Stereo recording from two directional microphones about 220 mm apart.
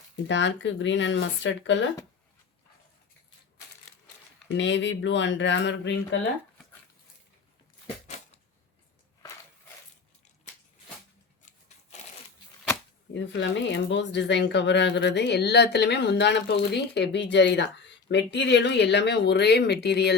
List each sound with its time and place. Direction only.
0.3 s speech: 55° left (ahead or behind)
4.4 s speech: 55° left (ahead or behind)
13.1 s speech: 55° left (ahead or behind)